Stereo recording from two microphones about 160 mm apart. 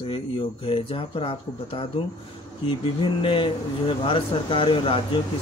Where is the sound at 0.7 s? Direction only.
35° left (ahead or behind).